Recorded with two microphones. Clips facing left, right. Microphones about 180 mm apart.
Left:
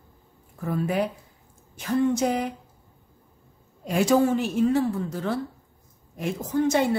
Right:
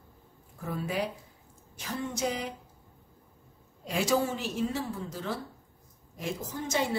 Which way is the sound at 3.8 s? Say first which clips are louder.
Left 7 dB; 50° left (ahead or behind).